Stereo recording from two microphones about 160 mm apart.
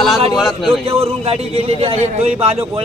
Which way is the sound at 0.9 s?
40° right (ahead or behind).